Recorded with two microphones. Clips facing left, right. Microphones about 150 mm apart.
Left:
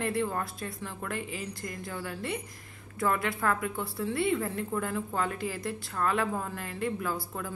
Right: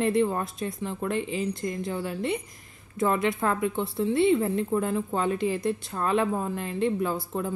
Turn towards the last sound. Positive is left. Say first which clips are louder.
# right 6 dB
turn(degrees=-25)  # may be behind; listen again after turning